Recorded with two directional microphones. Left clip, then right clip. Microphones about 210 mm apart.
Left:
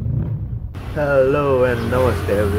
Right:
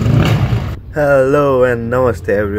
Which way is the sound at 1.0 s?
15° right (ahead or behind).